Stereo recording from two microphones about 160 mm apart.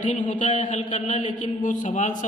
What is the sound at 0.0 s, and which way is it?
A man's voice, 50° left (ahead or behind).